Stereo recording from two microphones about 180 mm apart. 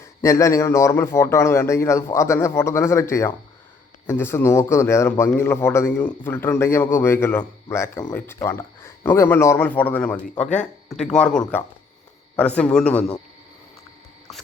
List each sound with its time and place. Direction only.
0.0 s a man's voice: 15° left (ahead or behind)